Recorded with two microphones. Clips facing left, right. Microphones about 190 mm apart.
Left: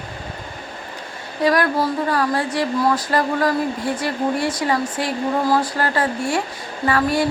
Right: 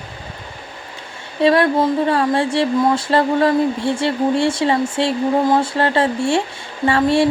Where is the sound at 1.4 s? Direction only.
25° right (ahead or behind).